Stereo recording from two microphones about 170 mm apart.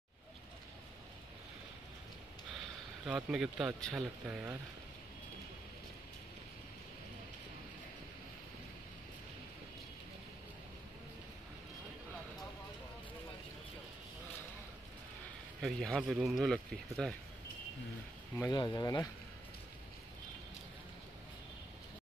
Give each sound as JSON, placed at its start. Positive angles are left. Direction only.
{"t": 3.1, "sound": "speech", "side_deg": -5}
{"t": 15.6, "sound": "speech", "side_deg": 0}
{"t": 18.5, "sound": "speech", "side_deg": 25}